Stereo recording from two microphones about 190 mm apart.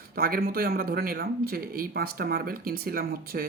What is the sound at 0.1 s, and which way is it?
Speech, 50° right (ahead or behind).